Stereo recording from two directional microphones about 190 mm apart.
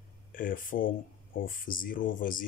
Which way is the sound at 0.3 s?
45° left (ahead or behind).